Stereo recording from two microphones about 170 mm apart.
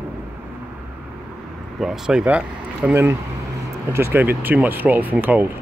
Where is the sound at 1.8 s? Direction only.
5° right (ahead or behind).